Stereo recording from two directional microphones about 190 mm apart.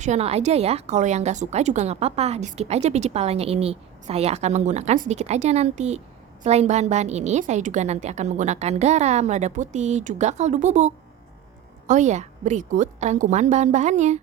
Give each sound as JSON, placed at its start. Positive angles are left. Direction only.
{"t": 0.0, "sound": "a woman's voice", "side_deg": -35}